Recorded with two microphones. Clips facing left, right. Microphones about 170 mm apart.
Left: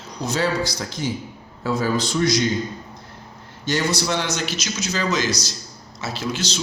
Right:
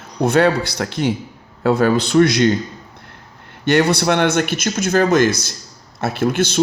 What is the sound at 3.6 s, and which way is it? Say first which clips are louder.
Speech: right 8 dB; 60° right (ahead or behind).